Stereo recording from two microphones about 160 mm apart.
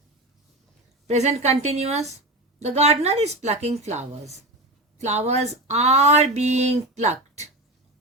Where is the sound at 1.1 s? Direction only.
45° right (ahead or behind).